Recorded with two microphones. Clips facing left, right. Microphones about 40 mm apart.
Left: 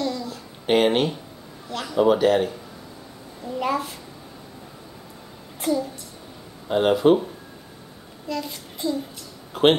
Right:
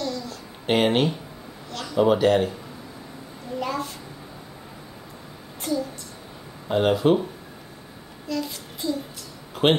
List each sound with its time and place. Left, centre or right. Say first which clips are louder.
0.0 s babbling: left 3 dB; centre
0.7 s speech: left 1 dB; centre
1.7 s speech: left 3 dB; centre
2.0 s speech: left 1 dB; centre
3.5 s a child's voice: left 3 dB; centre
5.6 s a woman's voice: left 3 dB; centre
6.7 s speech: left 2 dB; centre
8.3 s child singing: right 1 dB; centre